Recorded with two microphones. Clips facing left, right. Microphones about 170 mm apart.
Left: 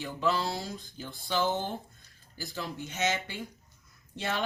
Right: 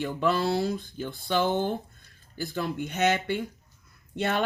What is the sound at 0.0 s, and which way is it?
Speech, 55° right (ahead or behind).